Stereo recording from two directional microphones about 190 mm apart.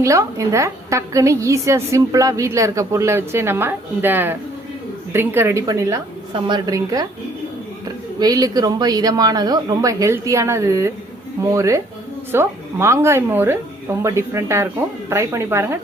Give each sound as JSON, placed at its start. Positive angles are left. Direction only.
{"t": 0.0, "sound": "a woman's voice", "side_deg": -15}